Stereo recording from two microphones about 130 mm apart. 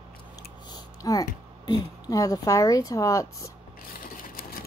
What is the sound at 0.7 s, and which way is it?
Typing, 25° left (ahead or behind).